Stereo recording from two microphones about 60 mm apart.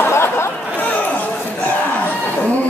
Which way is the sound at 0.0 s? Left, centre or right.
Left.